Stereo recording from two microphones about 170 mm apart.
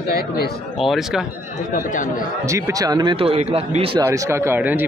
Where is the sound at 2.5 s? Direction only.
20° right (ahead or behind).